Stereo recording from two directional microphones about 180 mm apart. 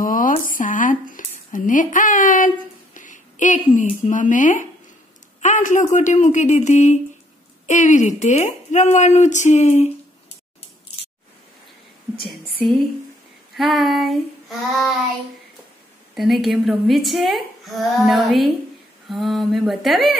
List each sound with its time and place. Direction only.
0.0 s a sound: 50° left (ahead or behind)
5.4 s a woman's voice: 45° left (ahead or behind)
12.2 s speech: centre (ahead or behind)
16.2 s speech: centre (ahead or behind)